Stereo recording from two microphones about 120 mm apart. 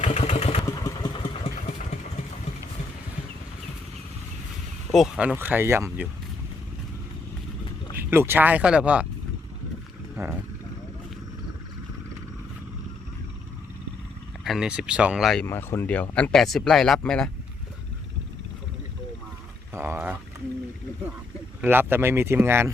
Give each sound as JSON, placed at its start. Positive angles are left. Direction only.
{"t": 0.0, "sound": "vehicle", "side_deg": 70}
{"t": 0.6, "sound": "vehicle", "side_deg": 30}
{"t": 4.9, "sound": "speech", "side_deg": 0}
{"t": 7.9, "sound": "speech", "side_deg": -20}
{"t": 10.2, "sound": "speech", "side_deg": -25}
{"t": 14.4, "sound": "speech", "side_deg": -5}
{"t": 15.4, "sound": "speech", "side_deg": 20}
{"t": 19.7, "sound": "a sound", "side_deg": -20}
{"t": 21.6, "sound": "speech", "side_deg": -15}